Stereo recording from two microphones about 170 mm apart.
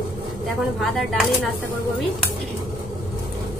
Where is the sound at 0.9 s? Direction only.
Centre (ahead or behind).